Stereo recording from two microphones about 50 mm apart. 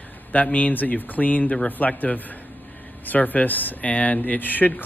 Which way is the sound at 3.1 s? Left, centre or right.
Left.